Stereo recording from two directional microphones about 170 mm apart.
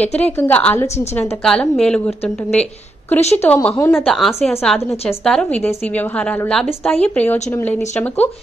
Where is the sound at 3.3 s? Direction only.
10° left (ahead or behind).